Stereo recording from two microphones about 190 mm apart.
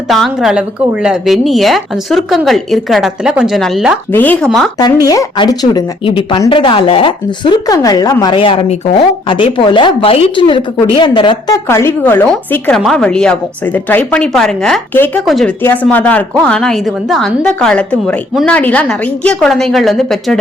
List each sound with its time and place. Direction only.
0.1 s speech: centre (ahead or behind)
4.8 s speech: 20° left (ahead or behind); by 20.4 s centre (ahead or behind)